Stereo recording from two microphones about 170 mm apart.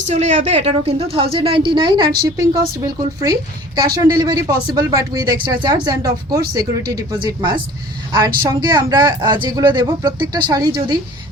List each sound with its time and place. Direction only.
0.1 s a woman's voice: 45° right (ahead or behind); by 10.9 s 25° right (ahead or behind)